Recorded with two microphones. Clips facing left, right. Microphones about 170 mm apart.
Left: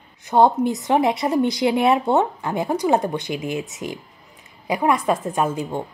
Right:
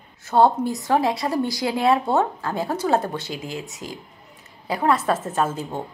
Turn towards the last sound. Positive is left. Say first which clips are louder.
# left 2 dB
turn(degrees=15)  # may be behind; listen again after turning